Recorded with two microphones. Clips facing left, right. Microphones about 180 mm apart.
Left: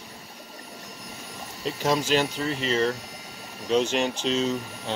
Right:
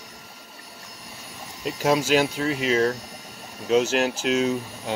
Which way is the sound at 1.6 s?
5° right (ahead or behind).